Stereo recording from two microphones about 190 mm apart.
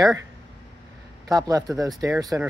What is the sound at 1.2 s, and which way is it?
Speech, 20° right (ahead or behind).